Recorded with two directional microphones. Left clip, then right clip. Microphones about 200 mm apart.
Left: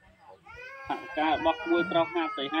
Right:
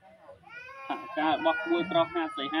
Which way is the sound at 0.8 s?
25° right (ahead or behind).